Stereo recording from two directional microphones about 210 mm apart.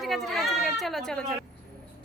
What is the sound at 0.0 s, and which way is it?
A woman's voice, centre (ahead or behind).